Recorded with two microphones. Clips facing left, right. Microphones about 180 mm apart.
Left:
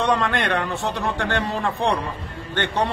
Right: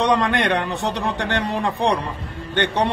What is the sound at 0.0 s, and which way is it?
A man's voice, 15° right (ahead or behind).